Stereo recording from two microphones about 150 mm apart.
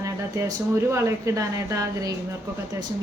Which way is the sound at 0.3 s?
20° right (ahead or behind).